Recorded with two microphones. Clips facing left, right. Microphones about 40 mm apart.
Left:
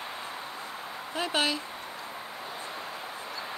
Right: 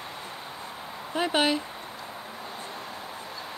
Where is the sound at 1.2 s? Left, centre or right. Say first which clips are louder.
Right 4 dB; centre.